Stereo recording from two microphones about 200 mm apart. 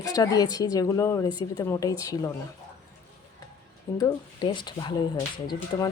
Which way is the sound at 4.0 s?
25° left (ahead or behind).